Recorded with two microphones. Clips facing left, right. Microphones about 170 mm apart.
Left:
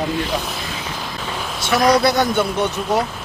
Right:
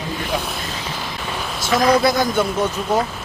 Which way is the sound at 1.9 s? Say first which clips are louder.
Even; 65° left (ahead or behind).